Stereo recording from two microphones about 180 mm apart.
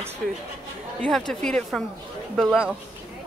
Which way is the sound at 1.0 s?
Centre (ahead or behind).